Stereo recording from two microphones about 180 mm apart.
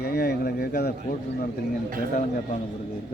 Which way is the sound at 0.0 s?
65° left (ahead or behind).